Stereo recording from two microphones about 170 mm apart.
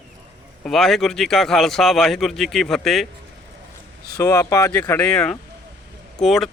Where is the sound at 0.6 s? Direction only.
Centre (ahead or behind).